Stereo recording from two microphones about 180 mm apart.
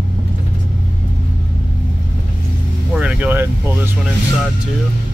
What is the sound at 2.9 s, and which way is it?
Speech, 5° right (ahead or behind).